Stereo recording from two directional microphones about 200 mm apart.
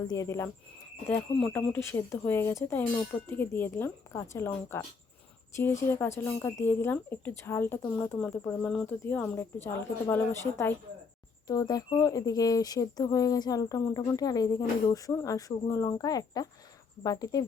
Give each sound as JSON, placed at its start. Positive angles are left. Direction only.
{"t": 0.1, "sound": "speech", "side_deg": 15}